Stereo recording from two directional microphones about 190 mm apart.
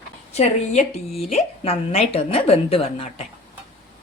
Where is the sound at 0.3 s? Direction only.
35° left (ahead or behind).